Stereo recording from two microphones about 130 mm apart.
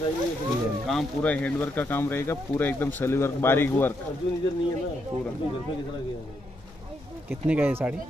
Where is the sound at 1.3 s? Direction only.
10° left (ahead or behind).